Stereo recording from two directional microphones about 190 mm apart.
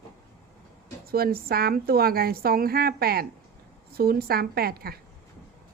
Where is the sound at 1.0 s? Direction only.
50° right (ahead or behind).